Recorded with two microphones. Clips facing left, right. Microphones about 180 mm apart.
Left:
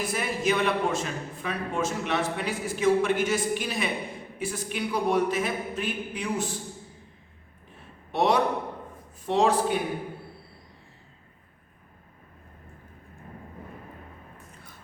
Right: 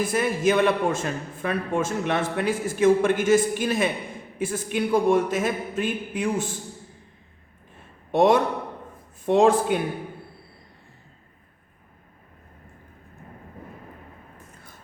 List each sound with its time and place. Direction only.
0.0 s a man's voice: 50° right (ahead or behind)
8.1 s a man's voice: 50° right (ahead or behind)